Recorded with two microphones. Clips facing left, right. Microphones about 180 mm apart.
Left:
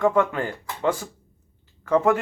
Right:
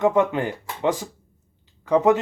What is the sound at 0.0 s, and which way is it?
Speech, 20° right (ahead or behind).